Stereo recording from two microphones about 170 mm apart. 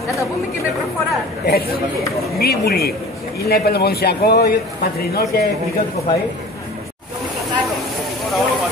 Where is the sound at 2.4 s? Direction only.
65° left (ahead or behind).